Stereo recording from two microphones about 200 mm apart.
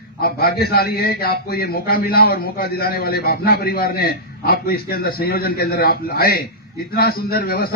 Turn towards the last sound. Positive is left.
turn(degrees=50)  # may be behind; listen again after turning